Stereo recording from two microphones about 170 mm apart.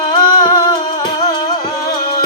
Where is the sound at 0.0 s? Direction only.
25° left (ahead or behind).